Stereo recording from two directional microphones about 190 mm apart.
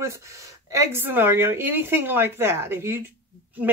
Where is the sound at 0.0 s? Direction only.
15° right (ahead or behind).